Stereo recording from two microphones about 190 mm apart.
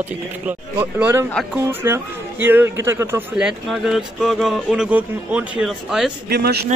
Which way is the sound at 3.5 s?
Centre (ahead or behind).